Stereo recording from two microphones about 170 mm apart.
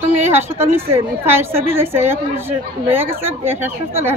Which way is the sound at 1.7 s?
15° right (ahead or behind).